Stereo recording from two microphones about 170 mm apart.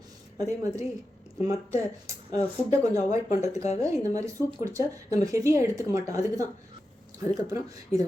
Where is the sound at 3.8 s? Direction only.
20° right (ahead or behind).